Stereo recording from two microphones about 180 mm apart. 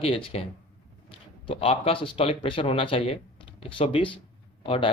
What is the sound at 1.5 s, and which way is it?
Speech, 30° left (ahead or behind).